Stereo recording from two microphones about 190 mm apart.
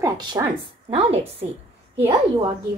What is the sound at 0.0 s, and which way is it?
Speech, 20° right (ahead or behind).